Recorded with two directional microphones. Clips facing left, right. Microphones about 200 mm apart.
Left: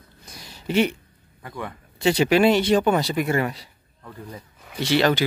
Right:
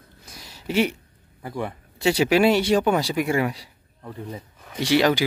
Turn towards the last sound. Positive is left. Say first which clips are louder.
# right 1 dB
turn(degrees=-10)  # may be behind; listen again after turning